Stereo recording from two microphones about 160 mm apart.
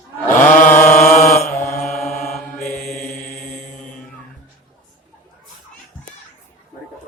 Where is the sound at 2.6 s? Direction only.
65° left (ahead or behind); by 4.0 s 50° left (ahead or behind).